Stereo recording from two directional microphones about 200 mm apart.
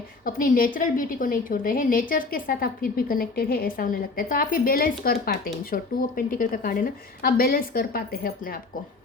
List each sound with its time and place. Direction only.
0.3 s a woman's voice: 45° left (ahead or behind)